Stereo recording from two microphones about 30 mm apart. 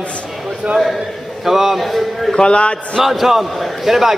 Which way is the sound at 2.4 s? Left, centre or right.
Left.